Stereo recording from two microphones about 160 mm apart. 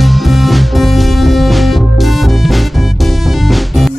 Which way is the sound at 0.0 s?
Centre (ahead or behind).